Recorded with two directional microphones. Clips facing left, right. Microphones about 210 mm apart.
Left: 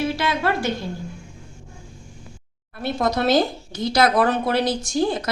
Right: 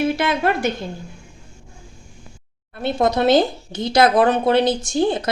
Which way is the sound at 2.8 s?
25° right (ahead or behind).